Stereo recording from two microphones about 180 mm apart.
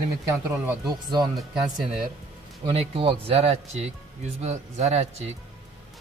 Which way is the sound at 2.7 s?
30° right (ahead or behind).